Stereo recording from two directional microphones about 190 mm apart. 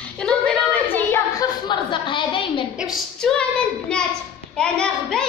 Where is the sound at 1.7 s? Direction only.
25° left (ahead or behind).